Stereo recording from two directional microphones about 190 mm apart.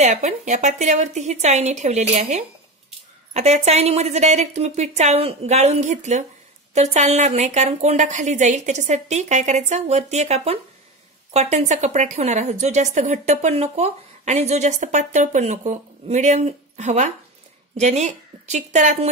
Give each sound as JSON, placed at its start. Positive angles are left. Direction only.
{"t": 0.0, "sound": "a woman's voice", "side_deg": -40}